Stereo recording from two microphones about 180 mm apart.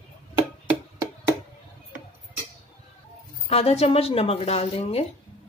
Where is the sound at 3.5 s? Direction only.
35° left (ahead or behind).